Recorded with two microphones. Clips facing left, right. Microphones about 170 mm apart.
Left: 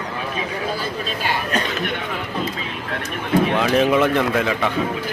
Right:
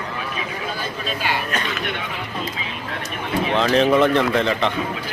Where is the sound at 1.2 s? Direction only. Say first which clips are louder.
Left 2 dB; 40° left (ahead or behind).